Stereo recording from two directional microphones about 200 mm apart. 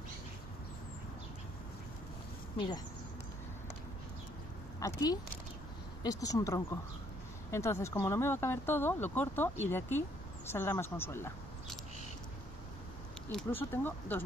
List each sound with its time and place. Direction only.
4.7 s speech: 15° left (ahead or behind)
13.3 s speech: 5° left (ahead or behind)